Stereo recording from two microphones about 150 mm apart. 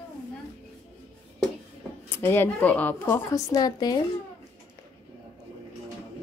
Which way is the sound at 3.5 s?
25° left (ahead or behind).